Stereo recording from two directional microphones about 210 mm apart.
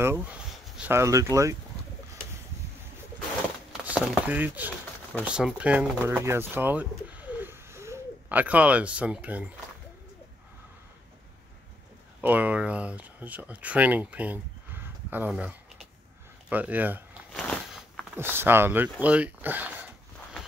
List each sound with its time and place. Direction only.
0.0 s speech: 10° right (ahead or behind)
3.8 s speech: 5° right (ahead or behind)
12.2 s speech: 10° right (ahead or behind)
17.3 s a sound: centre (ahead or behind)
18.1 s speech: 10° right (ahead or behind)